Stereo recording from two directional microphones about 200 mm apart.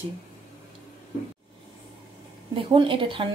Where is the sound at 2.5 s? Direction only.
25° right (ahead or behind).